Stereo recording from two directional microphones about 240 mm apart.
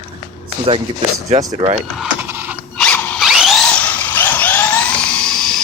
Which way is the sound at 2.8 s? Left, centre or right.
Centre.